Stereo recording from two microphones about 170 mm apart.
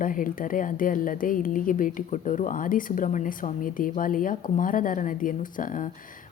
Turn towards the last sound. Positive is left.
turn(degrees=50)  # may be behind; listen again after turning